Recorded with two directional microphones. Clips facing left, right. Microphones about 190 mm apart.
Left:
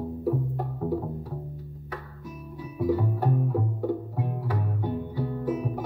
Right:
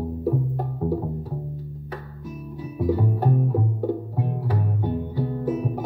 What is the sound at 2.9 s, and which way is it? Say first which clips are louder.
Music: right 3 dB; 25° right (ahead or behind).